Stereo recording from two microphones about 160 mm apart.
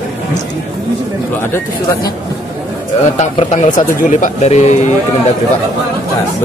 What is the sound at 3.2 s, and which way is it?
Speech, 45° left (ahead or behind).